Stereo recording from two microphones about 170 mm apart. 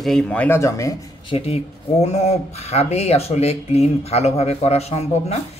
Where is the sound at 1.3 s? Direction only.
35° left (ahead or behind).